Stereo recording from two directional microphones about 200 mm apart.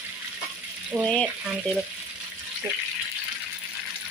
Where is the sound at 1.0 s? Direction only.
5° left (ahead or behind).